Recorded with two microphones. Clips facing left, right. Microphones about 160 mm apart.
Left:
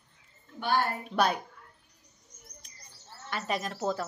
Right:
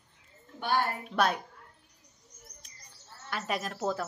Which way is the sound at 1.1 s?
Centre (ahead or behind).